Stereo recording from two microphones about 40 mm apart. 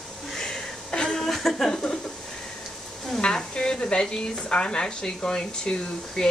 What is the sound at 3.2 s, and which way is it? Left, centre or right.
Sizzle, left.